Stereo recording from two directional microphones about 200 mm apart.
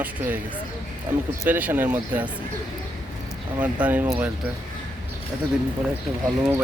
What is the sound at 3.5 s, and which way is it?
Speech, 5° right (ahead or behind).